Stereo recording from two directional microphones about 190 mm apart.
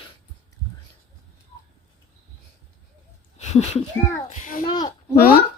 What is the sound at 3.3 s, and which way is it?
A child's voice, 35° left (ahead or behind).